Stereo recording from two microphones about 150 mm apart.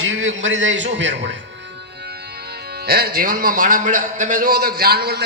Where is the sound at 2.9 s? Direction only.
90° right.